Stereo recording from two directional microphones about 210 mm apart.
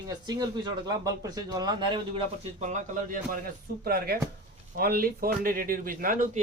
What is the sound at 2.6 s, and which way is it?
A man's voice, 35° right (ahead or behind).